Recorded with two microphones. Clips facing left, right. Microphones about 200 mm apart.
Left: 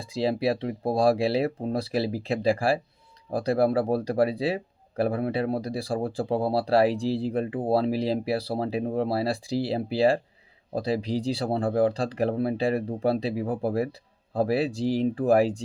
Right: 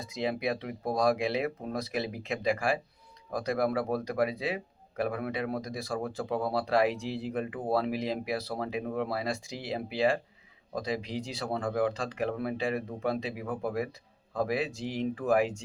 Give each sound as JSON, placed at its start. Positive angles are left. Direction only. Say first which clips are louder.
{"t": 0.0, "sound": "speech", "louder": "left 6 dB", "side_deg": 30}